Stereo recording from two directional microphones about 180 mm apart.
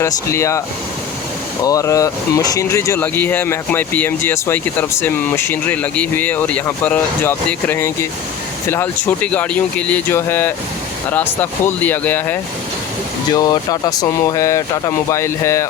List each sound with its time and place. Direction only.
0.0 s speech: 15° left (ahead or behind)
1.6 s speech: 20° left (ahead or behind)
13.3 s speech: 20° left (ahead or behind)